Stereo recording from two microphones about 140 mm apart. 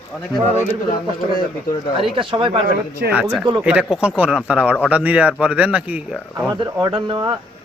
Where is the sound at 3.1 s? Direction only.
10° right (ahead or behind).